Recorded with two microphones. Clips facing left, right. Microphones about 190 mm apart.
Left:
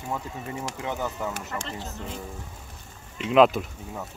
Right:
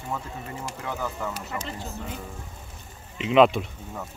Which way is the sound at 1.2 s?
20° left (ahead or behind).